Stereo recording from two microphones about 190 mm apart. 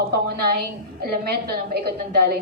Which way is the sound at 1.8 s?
60° right (ahead or behind).